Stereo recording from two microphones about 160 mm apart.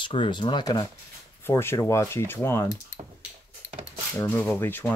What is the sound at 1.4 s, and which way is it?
Speech, 15° left (ahead or behind).